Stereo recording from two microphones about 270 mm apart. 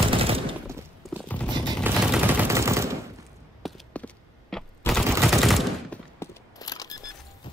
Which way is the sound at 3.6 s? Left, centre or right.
Centre.